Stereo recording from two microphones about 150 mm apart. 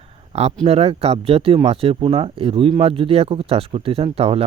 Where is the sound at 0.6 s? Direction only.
40° right (ahead or behind).